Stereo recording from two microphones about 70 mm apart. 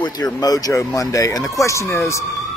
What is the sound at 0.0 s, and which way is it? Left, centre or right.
Speech, left.